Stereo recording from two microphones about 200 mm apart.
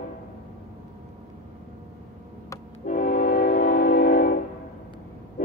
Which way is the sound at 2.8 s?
40° left (ahead or behind).